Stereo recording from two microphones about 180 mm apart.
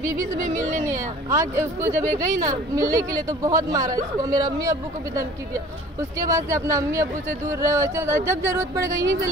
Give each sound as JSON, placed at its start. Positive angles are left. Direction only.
{"t": 1.3, "sound": "speech", "side_deg": -15}